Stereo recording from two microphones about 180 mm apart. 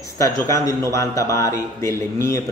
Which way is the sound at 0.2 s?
20° left (ahead or behind).